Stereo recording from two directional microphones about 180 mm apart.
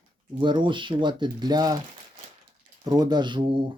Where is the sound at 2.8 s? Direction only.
25° right (ahead or behind).